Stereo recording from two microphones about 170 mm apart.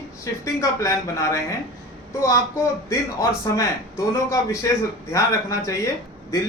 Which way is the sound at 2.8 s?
15° left (ahead or behind).